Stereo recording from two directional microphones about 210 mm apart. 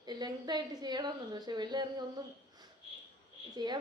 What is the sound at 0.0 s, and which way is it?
A woman's voice, 20° right (ahead or behind).